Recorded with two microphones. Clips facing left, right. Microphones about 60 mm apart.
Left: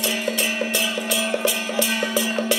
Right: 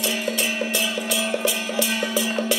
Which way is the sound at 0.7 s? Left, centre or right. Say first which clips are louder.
Left 1 dB; left.